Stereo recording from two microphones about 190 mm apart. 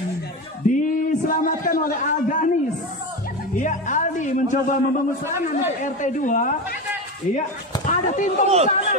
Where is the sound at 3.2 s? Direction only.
45° left (ahead or behind).